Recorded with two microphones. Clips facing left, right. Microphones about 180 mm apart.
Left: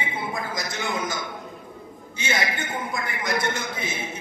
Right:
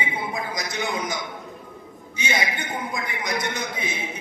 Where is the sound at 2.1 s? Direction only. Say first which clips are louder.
Even; 15° right (ahead or behind).